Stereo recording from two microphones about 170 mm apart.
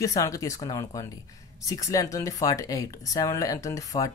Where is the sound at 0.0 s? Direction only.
20° left (ahead or behind).